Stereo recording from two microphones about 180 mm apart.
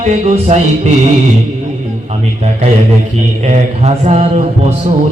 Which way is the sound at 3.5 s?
35° right (ahead or behind).